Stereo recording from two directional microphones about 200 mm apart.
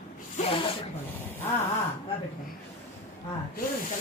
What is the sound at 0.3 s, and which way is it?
Speech, 30° left (ahead or behind).